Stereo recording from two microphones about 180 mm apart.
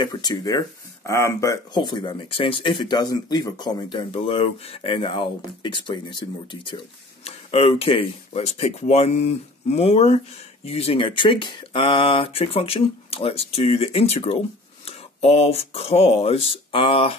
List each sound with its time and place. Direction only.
0.0 s speech: 25° left (ahead or behind)